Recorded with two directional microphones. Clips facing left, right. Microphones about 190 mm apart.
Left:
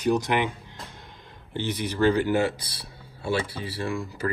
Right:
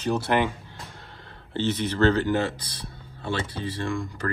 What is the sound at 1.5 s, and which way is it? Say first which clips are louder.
Speech: right 3 dB; 10° left (ahead or behind).